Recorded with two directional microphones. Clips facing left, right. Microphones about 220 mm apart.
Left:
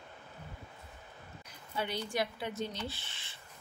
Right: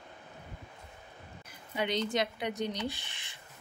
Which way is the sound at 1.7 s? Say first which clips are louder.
Right 4 dB; 20° right (ahead or behind).